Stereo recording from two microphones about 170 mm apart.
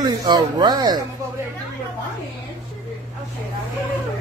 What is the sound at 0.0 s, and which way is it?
Speech, 25° right (ahead or behind).